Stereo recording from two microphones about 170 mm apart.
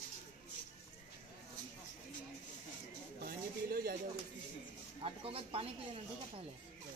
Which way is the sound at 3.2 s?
60° right (ahead or behind).